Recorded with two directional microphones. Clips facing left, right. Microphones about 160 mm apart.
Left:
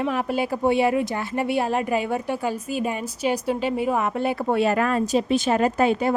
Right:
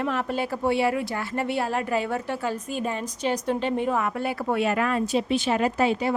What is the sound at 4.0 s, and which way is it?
A woman's voice, 20° left (ahead or behind).